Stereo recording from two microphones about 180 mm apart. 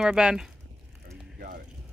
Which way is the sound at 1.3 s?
60° right (ahead or behind).